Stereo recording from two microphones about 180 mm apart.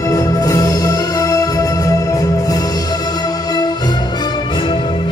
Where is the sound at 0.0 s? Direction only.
20° left (ahead or behind).